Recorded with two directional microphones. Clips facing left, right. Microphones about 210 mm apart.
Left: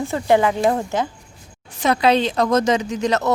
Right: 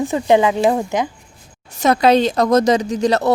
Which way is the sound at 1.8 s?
45° right (ahead or behind).